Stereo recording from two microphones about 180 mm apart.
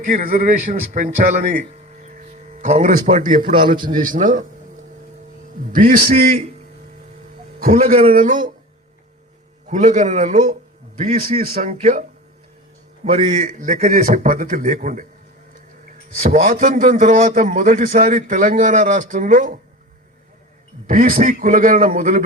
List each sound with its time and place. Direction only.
0.1 s a man's voice: 50° right (ahead or behind)
5.7 s a man's voice: 50° right (ahead or behind)
8.1 s a man's voice: 45° right (ahead or behind)
9.6 s a man's voice: 40° right (ahead or behind)
11.7 s a man's voice: 40° right (ahead or behind)
13.1 s a man's voice: 40° right (ahead or behind)
16.2 s a man's voice: 45° right (ahead or behind)
20.8 s a man's voice: 45° right (ahead or behind)